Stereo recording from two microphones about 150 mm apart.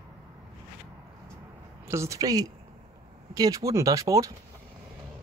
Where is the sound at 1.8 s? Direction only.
20° right (ahead or behind).